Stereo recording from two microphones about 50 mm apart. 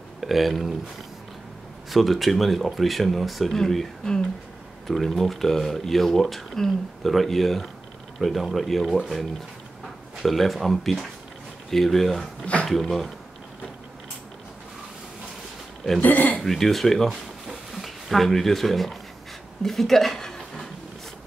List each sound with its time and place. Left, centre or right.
0.2 s speech: centre
1.9 s speech: centre
10.2 s speech: centre
16.0 s speech: left
16.3 s speech: centre
17.1 s a sound: centre